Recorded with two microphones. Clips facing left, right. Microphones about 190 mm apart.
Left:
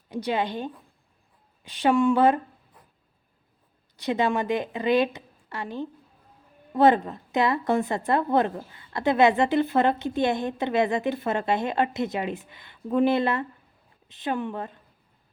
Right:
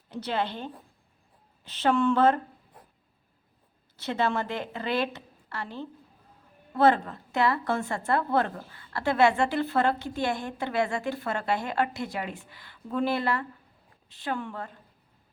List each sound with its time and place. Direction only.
0.1 s a woman's voice: 15° left (ahead or behind)
3.9 s a woman's voice: 15° left (ahead or behind)